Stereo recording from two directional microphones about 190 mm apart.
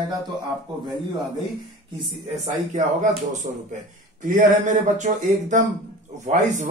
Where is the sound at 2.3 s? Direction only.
40° right (ahead or behind).